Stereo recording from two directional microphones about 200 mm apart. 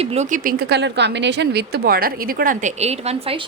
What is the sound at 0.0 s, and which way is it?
A woman's voice, 35° right (ahead or behind).